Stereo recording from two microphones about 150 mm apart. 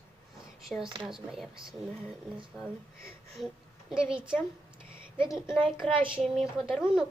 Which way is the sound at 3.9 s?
5° right (ahead or behind).